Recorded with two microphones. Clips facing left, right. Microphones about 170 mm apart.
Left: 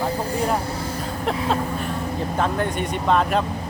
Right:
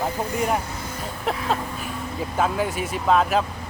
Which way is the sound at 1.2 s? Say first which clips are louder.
Left 2 dB; centre (ahead or behind).